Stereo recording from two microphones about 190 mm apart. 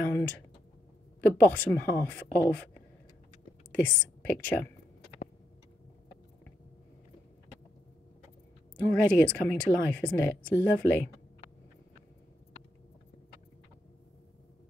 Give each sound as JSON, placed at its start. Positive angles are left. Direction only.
{"t": 0.0, "sound": "a sound", "side_deg": 10}
{"t": 1.4, "sound": "speech", "side_deg": 10}
{"t": 3.8, "sound": "speech", "side_deg": 5}
{"t": 8.7, "sound": "speech", "side_deg": 5}